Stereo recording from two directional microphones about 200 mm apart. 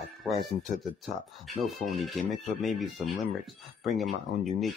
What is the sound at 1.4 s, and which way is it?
Speech, centre (ahead or behind).